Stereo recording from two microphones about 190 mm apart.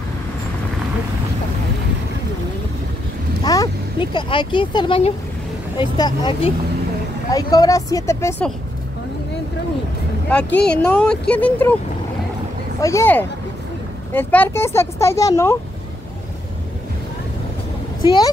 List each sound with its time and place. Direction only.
3.4 s speech: 20° left (ahead or behind)
10.6 s speech: 5° left (ahead or behind)
12.8 s speech: 15° left (ahead or behind)
18.0 s speech: 25° left (ahead or behind)